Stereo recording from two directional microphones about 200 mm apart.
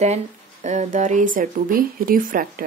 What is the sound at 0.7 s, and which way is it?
Speech, 35° right (ahead or behind).